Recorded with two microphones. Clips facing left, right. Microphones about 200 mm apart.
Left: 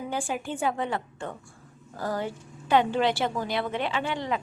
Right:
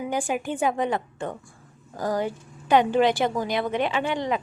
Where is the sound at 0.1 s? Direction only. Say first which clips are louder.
Right 4 dB; 15° right (ahead or behind).